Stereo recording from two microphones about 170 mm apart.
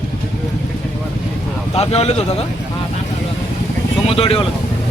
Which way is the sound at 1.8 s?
35° left (ahead or behind).